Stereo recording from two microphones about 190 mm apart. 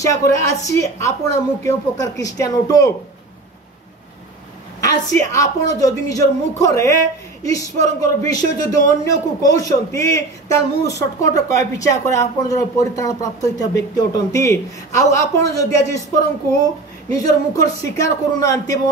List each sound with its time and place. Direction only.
0.0 s a man's voice: 15° left (ahead or behind)
4.7 s a man's voice: 15° left (ahead or behind)
17.1 s a man's voice: 20° left (ahead or behind)